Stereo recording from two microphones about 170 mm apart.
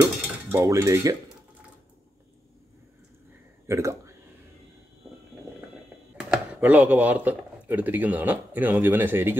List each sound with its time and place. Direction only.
0.0 s cutlery: 15° right (ahead or behind)
3.6 s speech: 15° right (ahead or behind)
6.1 s speech: 5° right (ahead or behind)